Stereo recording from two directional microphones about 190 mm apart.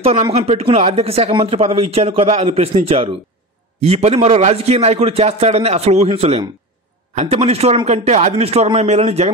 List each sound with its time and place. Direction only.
0.0 s speech: 35° right (ahead or behind)